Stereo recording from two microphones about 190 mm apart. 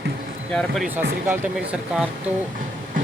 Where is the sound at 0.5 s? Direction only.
Centre (ahead or behind).